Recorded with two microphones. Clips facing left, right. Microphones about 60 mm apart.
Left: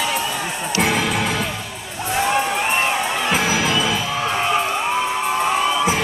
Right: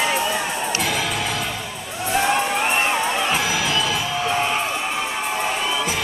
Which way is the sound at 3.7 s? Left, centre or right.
Centre.